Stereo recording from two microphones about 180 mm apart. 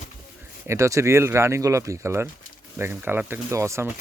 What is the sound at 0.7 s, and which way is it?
Speech, 15° right (ahead or behind).